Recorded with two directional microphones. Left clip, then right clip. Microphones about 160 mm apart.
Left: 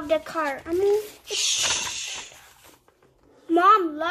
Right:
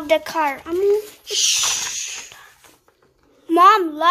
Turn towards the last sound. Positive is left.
turn(degrees=-60)  # may be behind; listen again after turning